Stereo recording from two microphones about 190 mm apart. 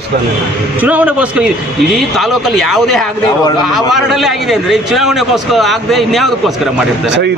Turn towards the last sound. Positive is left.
turn(degrees=-65)  # may be behind; listen again after turning